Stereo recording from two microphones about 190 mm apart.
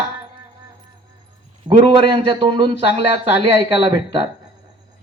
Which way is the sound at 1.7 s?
25° right (ahead or behind).